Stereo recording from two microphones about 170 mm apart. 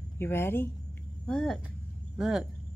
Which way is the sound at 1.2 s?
5° left (ahead or behind).